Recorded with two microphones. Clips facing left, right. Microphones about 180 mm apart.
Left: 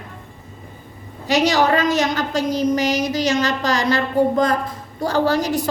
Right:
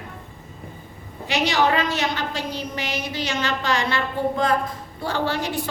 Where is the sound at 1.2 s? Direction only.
40° left (ahead or behind).